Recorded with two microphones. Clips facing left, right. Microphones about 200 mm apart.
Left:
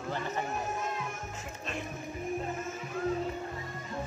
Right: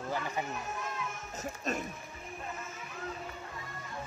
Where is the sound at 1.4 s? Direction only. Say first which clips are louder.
Right 8 dB; 40° right (ahead or behind).